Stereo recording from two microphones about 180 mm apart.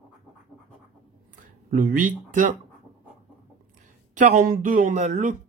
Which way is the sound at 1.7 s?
45° right (ahead or behind).